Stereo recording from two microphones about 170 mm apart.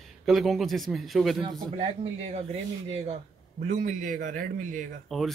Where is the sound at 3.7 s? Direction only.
45° right (ahead or behind).